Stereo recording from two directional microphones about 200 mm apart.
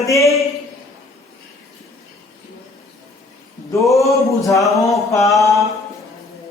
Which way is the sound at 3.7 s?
15° left (ahead or behind).